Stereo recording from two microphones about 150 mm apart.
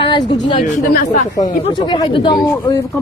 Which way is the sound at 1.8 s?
30° left (ahead or behind).